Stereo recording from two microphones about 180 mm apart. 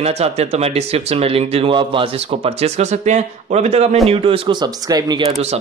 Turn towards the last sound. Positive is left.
turn(degrees=-20)  # may be behind; listen again after turning